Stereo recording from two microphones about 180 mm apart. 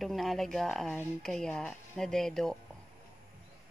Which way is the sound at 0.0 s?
Centre (ahead or behind).